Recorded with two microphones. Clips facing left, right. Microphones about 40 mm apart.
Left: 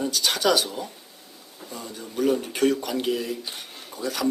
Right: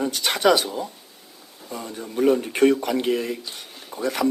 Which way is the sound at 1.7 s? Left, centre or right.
Right.